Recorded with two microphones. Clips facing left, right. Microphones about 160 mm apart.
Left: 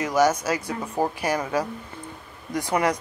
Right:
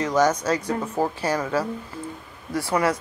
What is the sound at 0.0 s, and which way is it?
Speech, 10° left (ahead or behind).